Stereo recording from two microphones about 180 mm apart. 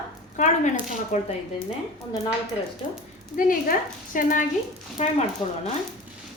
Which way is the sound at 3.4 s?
50° left (ahead or behind).